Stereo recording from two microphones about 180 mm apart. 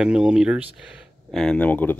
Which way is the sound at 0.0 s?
5° right (ahead or behind).